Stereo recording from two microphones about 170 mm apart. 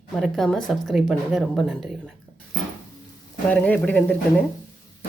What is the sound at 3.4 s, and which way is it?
Speech, 5° left (ahead or behind).